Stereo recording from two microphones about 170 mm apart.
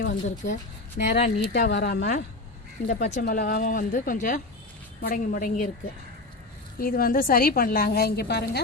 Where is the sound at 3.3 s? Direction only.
60° left (ahead or behind).